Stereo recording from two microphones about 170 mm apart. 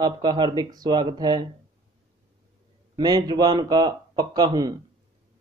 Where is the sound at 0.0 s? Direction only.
25° right (ahead or behind).